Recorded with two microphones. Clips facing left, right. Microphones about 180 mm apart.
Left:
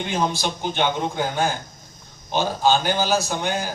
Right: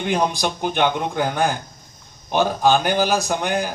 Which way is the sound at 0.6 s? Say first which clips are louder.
Right 3 dB; 60° right (ahead or behind).